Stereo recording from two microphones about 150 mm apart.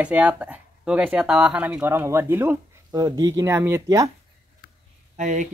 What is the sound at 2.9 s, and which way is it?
Speech, 25° right (ahead or behind).